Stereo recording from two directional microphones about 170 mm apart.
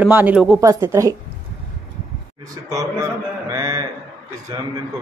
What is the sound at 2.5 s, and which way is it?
A man's voice, 20° right (ahead or behind).